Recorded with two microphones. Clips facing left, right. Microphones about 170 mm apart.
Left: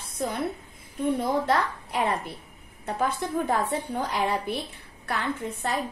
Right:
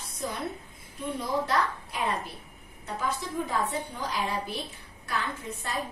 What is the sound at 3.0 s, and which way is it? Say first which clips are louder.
A woman's voice: left 5 dB; 60° left (ahead or behind).